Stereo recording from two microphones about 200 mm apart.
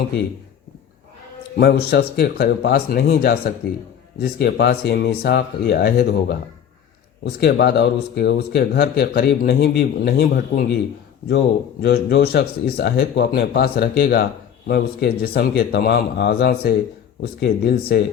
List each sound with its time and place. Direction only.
1.5 s speech: 55° left (ahead or behind)